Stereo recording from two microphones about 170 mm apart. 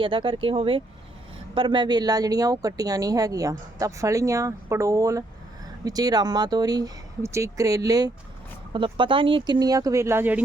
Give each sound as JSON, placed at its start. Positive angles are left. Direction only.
{"t": 0.0, "sound": "speech", "side_deg": -30}